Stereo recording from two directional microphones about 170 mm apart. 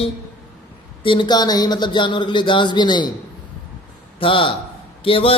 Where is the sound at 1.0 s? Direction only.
25° left (ahead or behind).